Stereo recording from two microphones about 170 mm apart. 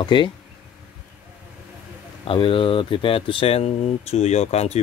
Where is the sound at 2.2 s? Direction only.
30° left (ahead or behind).